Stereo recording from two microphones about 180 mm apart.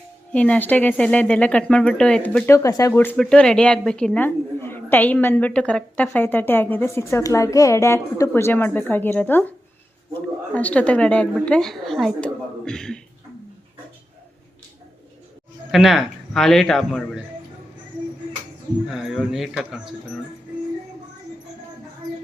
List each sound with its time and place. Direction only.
0.3 s a woman's voice: 5° left (ahead or behind)
15.7 s speech: centre (ahead or behind)
18.9 s speech: centre (ahead or behind)